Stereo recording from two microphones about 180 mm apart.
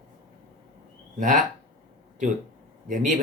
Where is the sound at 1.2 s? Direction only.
45° right (ahead or behind).